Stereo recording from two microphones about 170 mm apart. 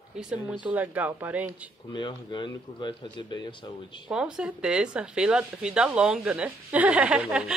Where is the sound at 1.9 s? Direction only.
25° left (ahead or behind).